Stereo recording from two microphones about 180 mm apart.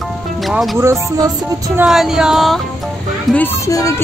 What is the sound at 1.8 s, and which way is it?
Speech, 5° right (ahead or behind).